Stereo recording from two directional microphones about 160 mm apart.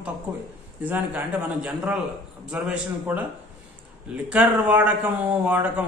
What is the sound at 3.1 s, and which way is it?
Speech, 10° right (ahead or behind).